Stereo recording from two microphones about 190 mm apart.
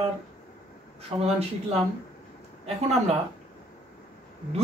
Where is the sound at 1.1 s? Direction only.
25° right (ahead or behind).